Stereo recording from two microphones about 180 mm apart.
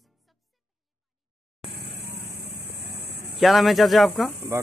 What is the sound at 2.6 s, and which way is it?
Vehicle, 65° right (ahead or behind).